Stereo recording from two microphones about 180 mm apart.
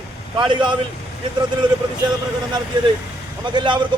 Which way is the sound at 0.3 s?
25° right (ahead or behind).